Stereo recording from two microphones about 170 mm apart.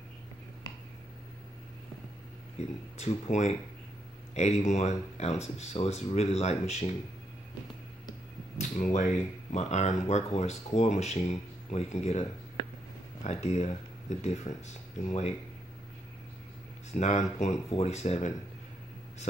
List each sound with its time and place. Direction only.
2.5 s speech: 40° left (ahead or behind)
8.9 s speech: 45° left (ahead or behind)
16.9 s speech: 45° left (ahead or behind)